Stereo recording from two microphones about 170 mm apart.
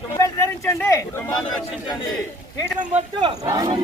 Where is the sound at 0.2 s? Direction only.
15° left (ahead or behind).